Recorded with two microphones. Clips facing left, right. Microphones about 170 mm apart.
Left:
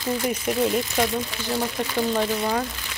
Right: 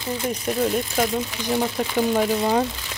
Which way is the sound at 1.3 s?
15° right (ahead or behind).